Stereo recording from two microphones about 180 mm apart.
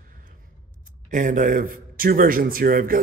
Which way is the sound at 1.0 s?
45° right (ahead or behind).